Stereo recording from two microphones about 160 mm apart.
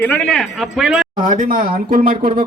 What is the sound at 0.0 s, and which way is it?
Speech, 10° left (ahead or behind).